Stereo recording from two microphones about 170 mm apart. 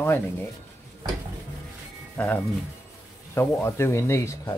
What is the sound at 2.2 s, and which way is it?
Speech, 10° left (ahead or behind).